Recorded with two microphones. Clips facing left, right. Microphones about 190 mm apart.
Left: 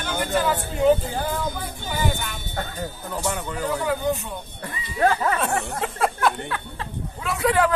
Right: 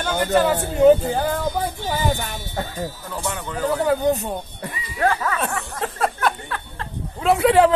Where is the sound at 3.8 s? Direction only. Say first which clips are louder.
Right 7 dB; 40° right (ahead or behind).